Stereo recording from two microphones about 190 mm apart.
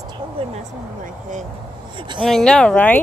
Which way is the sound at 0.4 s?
30° right (ahead or behind).